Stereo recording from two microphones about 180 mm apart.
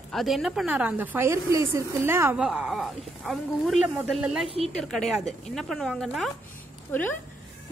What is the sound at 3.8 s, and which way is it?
Speech, 10° right (ahead or behind).